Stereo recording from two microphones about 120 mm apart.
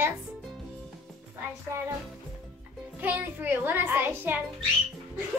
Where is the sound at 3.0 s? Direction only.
15° right (ahead or behind).